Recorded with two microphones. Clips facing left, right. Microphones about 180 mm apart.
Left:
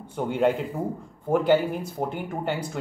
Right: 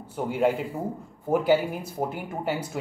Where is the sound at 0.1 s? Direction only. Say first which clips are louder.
Left 1 dB; 5° right (ahead or behind).